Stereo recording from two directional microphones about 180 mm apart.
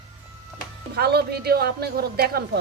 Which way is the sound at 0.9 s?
60° right (ahead or behind).